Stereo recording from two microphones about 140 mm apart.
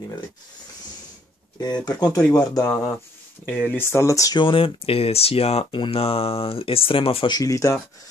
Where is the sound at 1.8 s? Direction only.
30° left (ahead or behind).